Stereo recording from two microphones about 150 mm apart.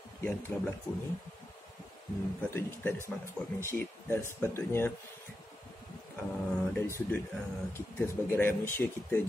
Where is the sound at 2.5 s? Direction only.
15° left (ahead or behind).